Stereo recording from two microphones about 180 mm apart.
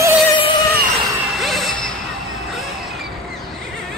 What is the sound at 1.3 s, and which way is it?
Music, centre (ahead or behind).